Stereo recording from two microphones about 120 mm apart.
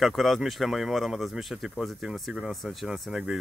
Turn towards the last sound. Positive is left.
turn(degrees=-5)  # may be behind; listen again after turning